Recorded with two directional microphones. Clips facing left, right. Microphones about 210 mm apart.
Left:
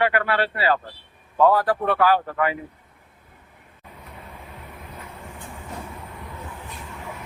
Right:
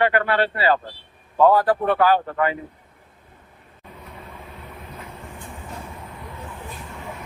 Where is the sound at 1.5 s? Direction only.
25° right (ahead or behind).